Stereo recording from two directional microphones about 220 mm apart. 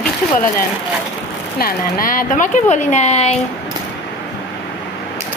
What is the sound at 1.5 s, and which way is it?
Speech, 40° left (ahead or behind).